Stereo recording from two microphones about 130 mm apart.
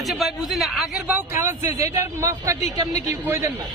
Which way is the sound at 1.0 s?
15° right (ahead or behind).